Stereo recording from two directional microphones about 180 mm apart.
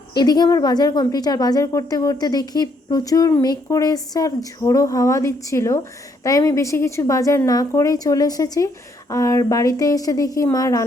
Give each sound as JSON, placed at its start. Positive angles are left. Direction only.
{"t": 0.1, "sound": "a woman's voice", "side_deg": 20}